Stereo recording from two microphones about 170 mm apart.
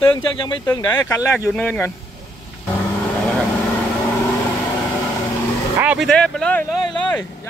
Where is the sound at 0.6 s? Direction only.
15° left (ahead or behind).